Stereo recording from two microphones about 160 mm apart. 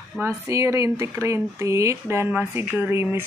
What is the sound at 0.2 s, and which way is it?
Speech, 20° right (ahead or behind).